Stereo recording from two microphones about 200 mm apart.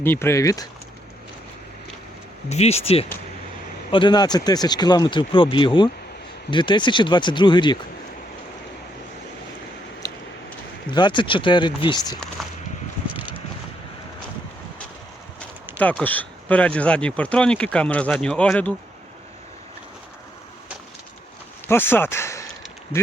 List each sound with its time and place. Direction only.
0.0 s speech: 10° left (ahead or behind)
2.5 s speech: 30° left (ahead or behind)
10.9 s speech: 25° left (ahead or behind)
12.4 s a sound: centre (ahead or behind)
15.8 s speech: 5° left (ahead or behind)
21.7 s speech: 10° left (ahead or behind)